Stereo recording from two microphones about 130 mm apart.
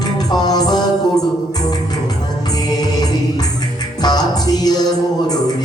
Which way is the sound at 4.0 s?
30° left (ahead or behind).